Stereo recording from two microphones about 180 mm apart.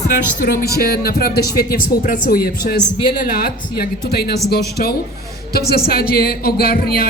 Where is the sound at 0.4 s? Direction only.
60° left (ahead or behind).